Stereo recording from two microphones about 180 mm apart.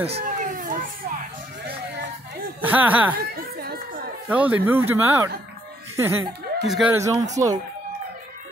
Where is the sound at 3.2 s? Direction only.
55° right (ahead or behind).